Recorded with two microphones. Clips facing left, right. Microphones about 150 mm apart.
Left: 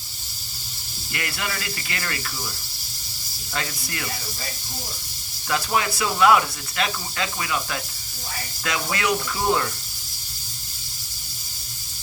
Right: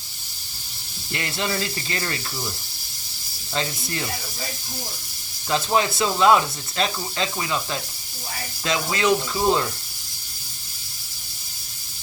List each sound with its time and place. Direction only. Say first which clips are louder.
1.1 s speech: right 4 dB; 25° right (ahead or behind)
3.5 s speech: right 3 dB; 25° right (ahead or behind)
5.5 s speech: right 3 dB; 25° right (ahead or behind)